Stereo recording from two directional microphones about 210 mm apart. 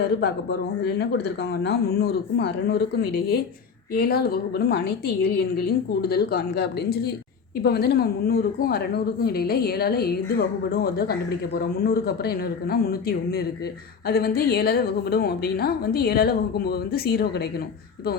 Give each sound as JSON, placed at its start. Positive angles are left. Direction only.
{"t": 0.9, "sound": "a woman's voice", "side_deg": 50}